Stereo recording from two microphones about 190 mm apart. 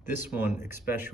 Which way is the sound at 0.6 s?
10° right (ahead or behind).